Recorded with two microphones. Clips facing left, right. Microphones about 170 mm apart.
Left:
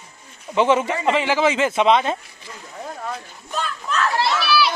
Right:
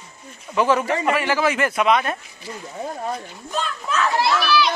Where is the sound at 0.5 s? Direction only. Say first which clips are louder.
Left 1 dB; 20° left (ahead or behind).